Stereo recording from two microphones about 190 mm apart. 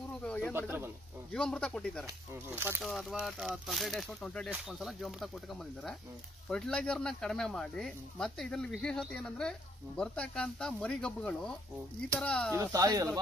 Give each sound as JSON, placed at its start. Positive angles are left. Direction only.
{"t": 0.2, "sound": "snake", "side_deg": 5}
{"t": 0.5, "sound": "speech", "side_deg": -10}
{"t": 1.3, "sound": "speech", "side_deg": 5}
{"t": 2.0, "sound": "speech", "side_deg": -10}
{"t": 2.8, "sound": "speech", "side_deg": 0}
{"t": 12.5, "sound": "speech", "side_deg": -20}